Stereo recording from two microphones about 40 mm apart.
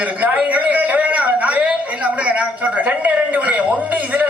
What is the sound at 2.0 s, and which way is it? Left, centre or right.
A man's voice, right.